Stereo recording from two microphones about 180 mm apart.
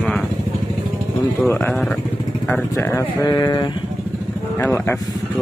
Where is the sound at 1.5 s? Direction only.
10° left (ahead or behind).